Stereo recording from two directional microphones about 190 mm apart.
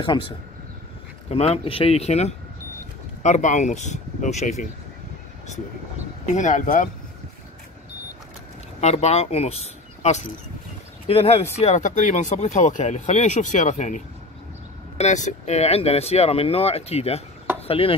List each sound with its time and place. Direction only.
0.0 s speech: 25° left (ahead or behind)
1.3 s speech: 30° left (ahead or behind)
6.3 s speech: 40° left (ahead or behind)
8.8 s speech: 35° left (ahead or behind)
17.6 s chopping: 30° left (ahead or behind)